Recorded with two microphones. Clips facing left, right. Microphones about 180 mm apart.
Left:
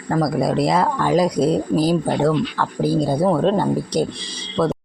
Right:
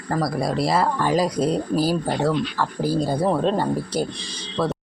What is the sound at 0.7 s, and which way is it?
Speech, 5° right (ahead or behind).